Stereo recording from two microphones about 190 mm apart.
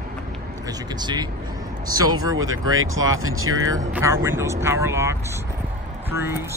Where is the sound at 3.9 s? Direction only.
15° right (ahead or behind).